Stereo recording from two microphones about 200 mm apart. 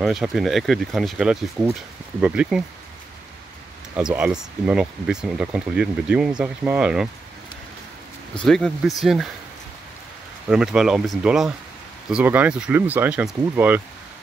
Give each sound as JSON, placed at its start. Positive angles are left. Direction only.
{"t": 0.0, "sound": "speech", "side_deg": 0}
{"t": 3.9, "sound": "speech", "side_deg": -5}
{"t": 8.4, "sound": "speech", "side_deg": 5}
{"t": 10.5, "sound": "speech", "side_deg": -5}